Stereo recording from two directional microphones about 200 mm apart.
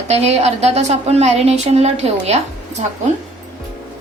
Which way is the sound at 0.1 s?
35° right (ahead or behind).